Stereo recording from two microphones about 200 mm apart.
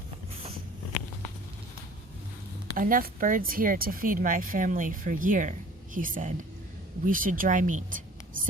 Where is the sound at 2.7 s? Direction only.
45° right (ahead or behind).